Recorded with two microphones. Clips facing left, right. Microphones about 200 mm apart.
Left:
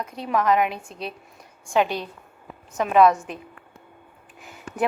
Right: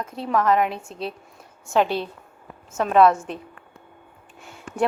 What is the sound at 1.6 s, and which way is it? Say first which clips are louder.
A woman's voice: right 1 dB; 10° left (ahead or behind).